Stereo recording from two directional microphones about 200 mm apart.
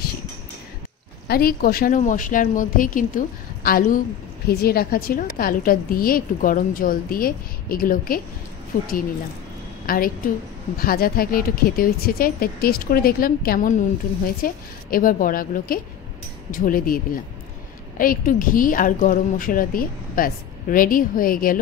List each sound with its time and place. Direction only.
1.2 s a woman's voice: 50° left (ahead or behind)
9.8 s a woman's voice: 45° left (ahead or behind)